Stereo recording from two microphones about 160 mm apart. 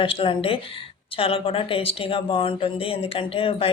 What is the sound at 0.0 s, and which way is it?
A woman's voice, 35° left (ahead or behind).